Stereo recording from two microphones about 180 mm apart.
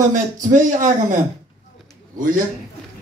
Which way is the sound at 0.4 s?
45° right (ahead or behind).